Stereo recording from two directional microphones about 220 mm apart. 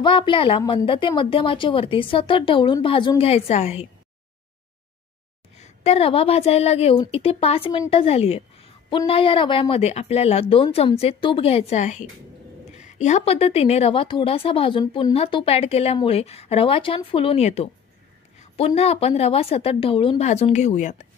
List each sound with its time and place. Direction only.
0.0 s a woman's voice: 20° left (ahead or behind)
5.6 s a woman's voice: 25° left (ahead or behind)
18.7 s a woman's voice: 25° left (ahead or behind)